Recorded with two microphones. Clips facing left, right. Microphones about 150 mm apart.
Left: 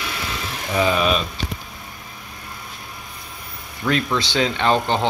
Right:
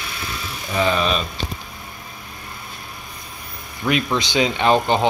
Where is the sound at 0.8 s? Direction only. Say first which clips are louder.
Left 1 dB; 5° left (ahead or behind).